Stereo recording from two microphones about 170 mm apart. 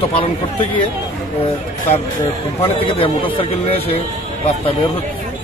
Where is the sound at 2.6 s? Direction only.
30° left (ahead or behind).